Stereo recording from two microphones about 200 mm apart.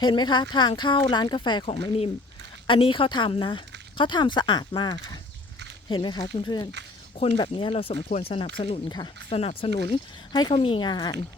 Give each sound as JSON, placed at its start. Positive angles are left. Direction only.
{"t": 0.0, "sound": "speech", "side_deg": 25}